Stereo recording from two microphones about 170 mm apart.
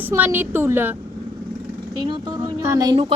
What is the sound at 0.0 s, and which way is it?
Speech, 15° right (ahead or behind).